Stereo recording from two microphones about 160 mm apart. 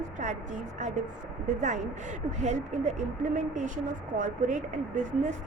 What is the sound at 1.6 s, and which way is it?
Speech, 50° right (ahead or behind).